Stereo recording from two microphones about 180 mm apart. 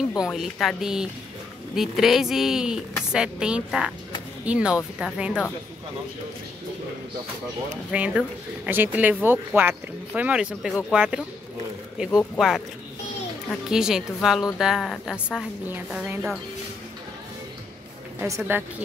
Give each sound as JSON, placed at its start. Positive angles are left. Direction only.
{"t": 0.2, "sound": "a woman's voice", "side_deg": 0}
{"t": 7.9, "sound": "a woman's voice", "side_deg": -5}
{"t": 12.4, "sound": "a woman's voice", "side_deg": 0}
{"t": 13.7, "sound": "a woman's voice", "side_deg": -5}
{"t": 18.2, "sound": "speech", "side_deg": -15}